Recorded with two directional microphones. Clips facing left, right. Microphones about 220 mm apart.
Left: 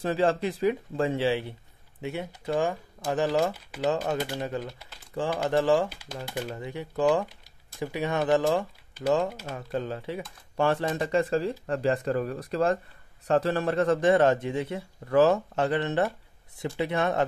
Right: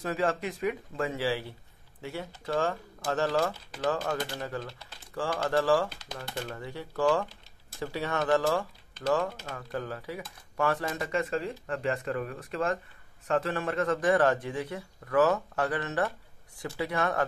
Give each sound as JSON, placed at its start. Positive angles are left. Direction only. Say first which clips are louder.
{"t": 0.0, "sound": "a man's voice", "louder": "left 5 dB", "side_deg": 30}